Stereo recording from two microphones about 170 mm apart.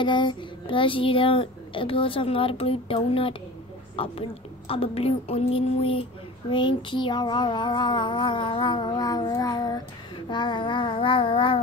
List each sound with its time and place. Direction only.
0.0 s a child's voice: 25° left (ahead or behind)
6.5 s child singing: 30° left (ahead or behind)